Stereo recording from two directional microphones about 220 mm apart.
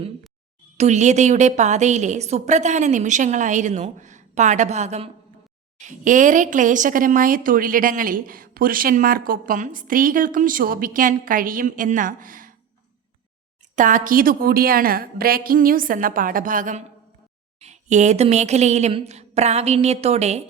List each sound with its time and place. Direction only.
0.8 s speech: 30° right (ahead or behind)
13.7 s speech: 35° right (ahead or behind)